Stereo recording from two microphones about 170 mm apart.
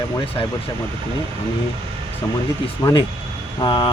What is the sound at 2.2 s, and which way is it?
Speech, 15° left (ahead or behind).